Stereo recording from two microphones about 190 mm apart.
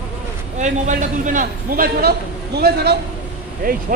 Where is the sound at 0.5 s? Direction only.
40° right (ahead or behind).